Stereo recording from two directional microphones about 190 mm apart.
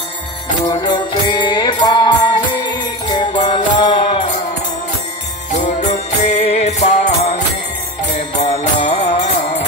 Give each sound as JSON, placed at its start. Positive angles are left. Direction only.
{"t": 0.7, "sound": "music", "side_deg": 25}
{"t": 5.8, "sound": "music", "side_deg": 40}
{"t": 8.4, "sound": "music", "side_deg": 35}